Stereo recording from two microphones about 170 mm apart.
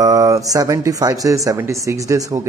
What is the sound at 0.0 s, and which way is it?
A man's voice, 20° right (ahead or behind).